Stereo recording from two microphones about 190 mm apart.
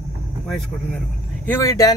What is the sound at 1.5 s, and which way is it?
Speech, 15° left (ahead or behind).